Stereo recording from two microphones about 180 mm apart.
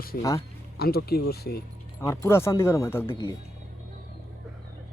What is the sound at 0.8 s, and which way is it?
Speech, 60° left (ahead or behind).